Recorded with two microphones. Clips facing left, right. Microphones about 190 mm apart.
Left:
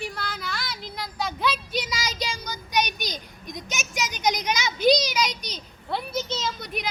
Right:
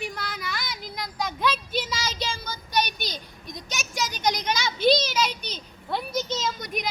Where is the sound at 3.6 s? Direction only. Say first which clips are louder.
Even; 20° left (ahead or behind).